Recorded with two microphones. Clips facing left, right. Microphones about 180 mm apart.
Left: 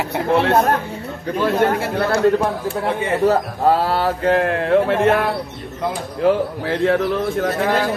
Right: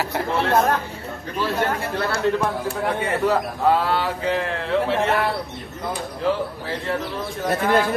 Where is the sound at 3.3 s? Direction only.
40° left (ahead or behind); by 7.4 s 60° left (ahead or behind).